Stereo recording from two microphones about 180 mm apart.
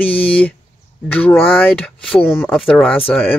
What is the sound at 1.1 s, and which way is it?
Speech, 10° left (ahead or behind).